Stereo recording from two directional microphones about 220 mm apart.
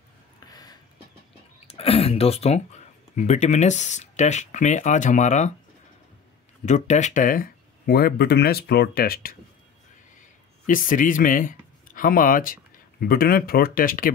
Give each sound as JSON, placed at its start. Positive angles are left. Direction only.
{"t": 0.5, "sound": "a sound", "side_deg": 15}
{"t": 1.7, "sound": "speech", "side_deg": 25}
{"t": 6.6, "sound": "speech", "side_deg": 30}
{"t": 10.7, "sound": "speech", "side_deg": 40}